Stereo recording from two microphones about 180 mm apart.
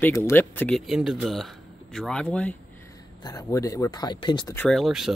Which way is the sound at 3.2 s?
20° left (ahead or behind).